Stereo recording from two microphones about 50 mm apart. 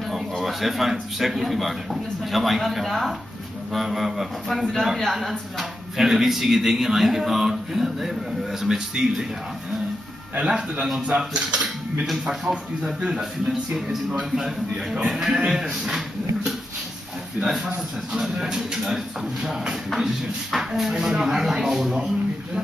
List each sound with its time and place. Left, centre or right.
0.1 s speech: centre
10.4 s speech: centre
12.1 s speech: centre
17.4 s speech: centre